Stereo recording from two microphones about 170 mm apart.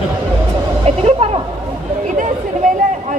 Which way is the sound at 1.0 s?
35° right (ahead or behind).